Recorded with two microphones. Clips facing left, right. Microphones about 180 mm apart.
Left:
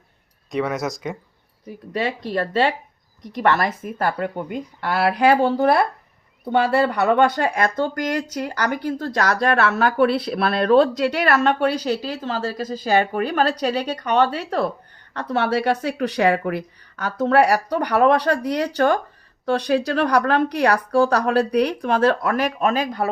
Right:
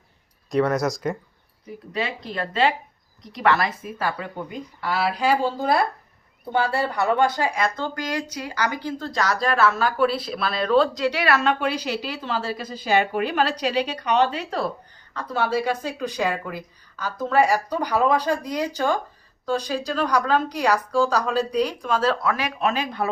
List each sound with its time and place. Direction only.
0.5 s speech: centre (ahead or behind)
1.9 s a woman's voice: 45° left (ahead or behind)
15.1 s a woman's voice: 70° left (ahead or behind); by 23.0 s 40° left (ahead or behind)